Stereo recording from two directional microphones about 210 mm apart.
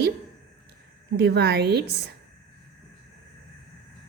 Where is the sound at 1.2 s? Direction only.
50° right (ahead or behind).